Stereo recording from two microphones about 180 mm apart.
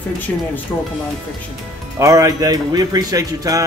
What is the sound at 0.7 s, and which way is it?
Speech, 10° left (ahead or behind).